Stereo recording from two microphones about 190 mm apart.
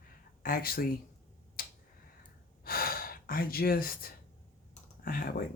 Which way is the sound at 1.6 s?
50° left (ahead or behind).